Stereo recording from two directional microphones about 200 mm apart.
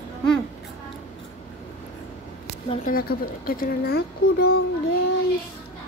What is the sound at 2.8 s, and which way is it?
A child's voice, 45° left (ahead or behind).